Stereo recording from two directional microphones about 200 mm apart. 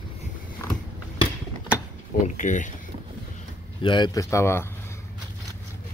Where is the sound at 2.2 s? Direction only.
40° left (ahead or behind).